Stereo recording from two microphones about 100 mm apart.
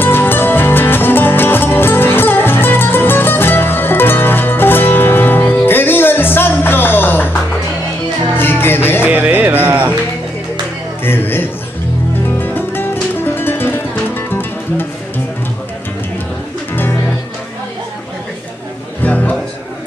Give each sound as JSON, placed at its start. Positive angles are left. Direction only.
{"t": 0.0, "sound": "music", "side_deg": 20}
{"t": 8.4, "sound": "music", "side_deg": 20}
{"t": 9.0, "sound": "music", "side_deg": -15}
{"t": 11.1, "sound": "a sound", "side_deg": 20}
{"t": 12.4, "sound": "music", "side_deg": 20}
{"t": 19.0, "sound": "music", "side_deg": 15}